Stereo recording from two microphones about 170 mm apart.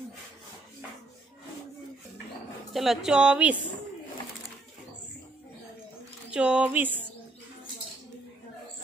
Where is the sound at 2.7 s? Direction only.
Centre (ahead or behind).